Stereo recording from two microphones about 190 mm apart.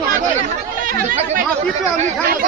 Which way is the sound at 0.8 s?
50° right (ahead or behind).